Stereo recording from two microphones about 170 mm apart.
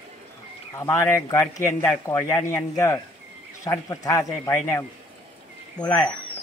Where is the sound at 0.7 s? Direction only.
15° left (ahead or behind).